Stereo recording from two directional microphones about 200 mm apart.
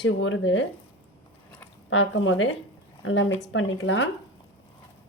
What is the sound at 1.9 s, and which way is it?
Speech, 75° left (ahead or behind).